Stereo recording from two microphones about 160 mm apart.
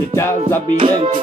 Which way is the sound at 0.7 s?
30° right (ahead or behind).